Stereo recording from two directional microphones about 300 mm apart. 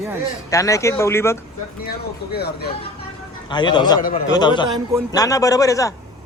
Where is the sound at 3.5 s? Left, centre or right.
Centre.